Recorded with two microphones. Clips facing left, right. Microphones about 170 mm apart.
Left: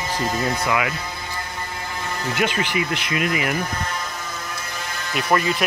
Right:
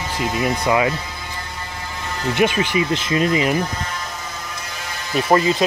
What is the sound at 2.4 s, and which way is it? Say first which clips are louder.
Speech: right 5 dB; 20° right (ahead or behind).